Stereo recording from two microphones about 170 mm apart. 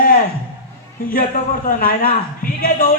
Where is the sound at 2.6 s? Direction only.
55° left (ahead or behind).